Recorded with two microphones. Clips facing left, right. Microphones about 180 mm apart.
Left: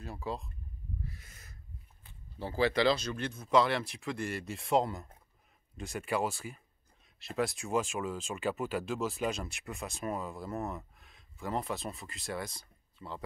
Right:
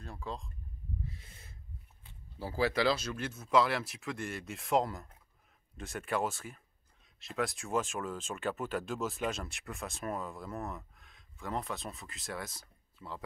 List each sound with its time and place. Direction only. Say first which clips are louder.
0.0 s speech: left 4 dB; 5° left (ahead or behind)
1.0 s a sound: right 1 dB; 25° right (ahead or behind)
2.3 s speech: left 2 dB; 5° right (ahead or behind)